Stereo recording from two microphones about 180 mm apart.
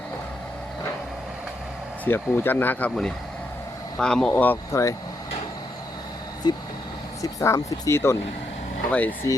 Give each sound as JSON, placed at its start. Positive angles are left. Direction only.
{"t": 2.0, "sound": "speech", "side_deg": 10}
{"t": 6.4, "sound": "speech", "side_deg": 25}